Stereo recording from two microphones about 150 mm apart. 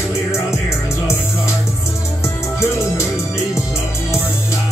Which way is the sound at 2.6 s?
20° left (ahead or behind).